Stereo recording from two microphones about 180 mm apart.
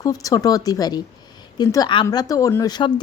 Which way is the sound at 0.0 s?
20° left (ahead or behind).